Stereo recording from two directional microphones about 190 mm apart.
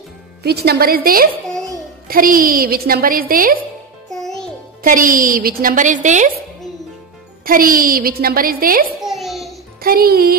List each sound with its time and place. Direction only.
0.4 s a woman's voice: 55° right (ahead or behind)
4.1 s music: centre (ahead or behind)
4.8 s a woman's voice: 45° right (ahead or behind)
7.4 s a woman's voice: 50° right (ahead or behind)
9.0 s a sound: centre (ahead or behind)
9.8 s speech: 50° right (ahead or behind)